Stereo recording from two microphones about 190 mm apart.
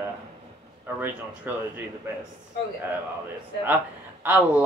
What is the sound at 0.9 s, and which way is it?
Speech, 10° right (ahead or behind).